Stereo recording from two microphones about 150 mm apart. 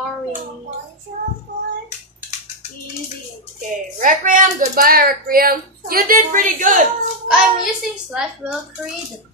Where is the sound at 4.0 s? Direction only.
65° right (ahead or behind).